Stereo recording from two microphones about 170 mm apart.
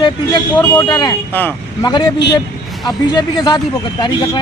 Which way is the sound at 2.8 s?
25° left (ahead or behind).